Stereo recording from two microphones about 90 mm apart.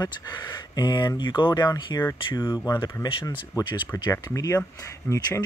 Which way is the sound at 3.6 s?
50° left (ahead or behind).